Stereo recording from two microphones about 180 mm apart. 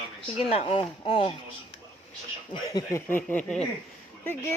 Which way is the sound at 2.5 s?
25° left (ahead or behind).